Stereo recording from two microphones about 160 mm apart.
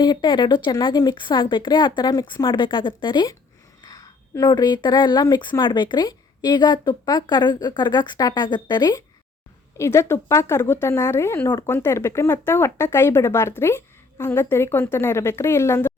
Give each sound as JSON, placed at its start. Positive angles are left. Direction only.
{"t": 0.0, "sound": "a woman's voice", "side_deg": 25}